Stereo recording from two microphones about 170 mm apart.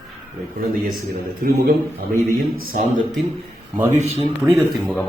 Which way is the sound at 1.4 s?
65° right (ahead or behind).